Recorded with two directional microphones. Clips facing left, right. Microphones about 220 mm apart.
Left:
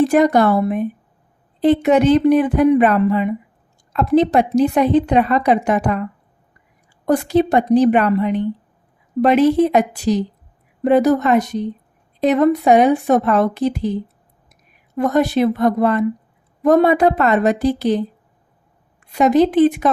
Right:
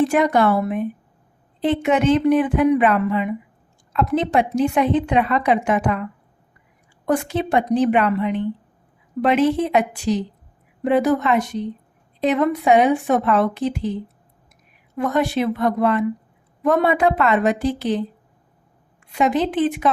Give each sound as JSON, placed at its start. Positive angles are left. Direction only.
{"t": 0.0, "sound": "a woman's voice", "side_deg": 40}
{"t": 14.9, "sound": "a woman's voice", "side_deg": 40}
{"t": 19.1, "sound": "a woman's voice", "side_deg": 40}